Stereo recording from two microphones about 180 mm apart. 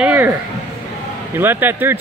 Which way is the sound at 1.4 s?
10° right (ahead or behind).